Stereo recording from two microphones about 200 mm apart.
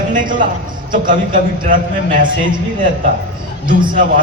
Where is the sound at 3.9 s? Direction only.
45° right (ahead or behind).